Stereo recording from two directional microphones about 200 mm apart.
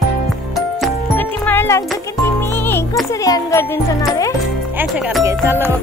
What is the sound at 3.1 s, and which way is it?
Speech, 15° left (ahead or behind).